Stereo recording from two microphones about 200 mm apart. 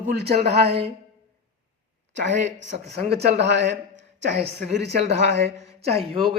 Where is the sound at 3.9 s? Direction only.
60° right (ahead or behind).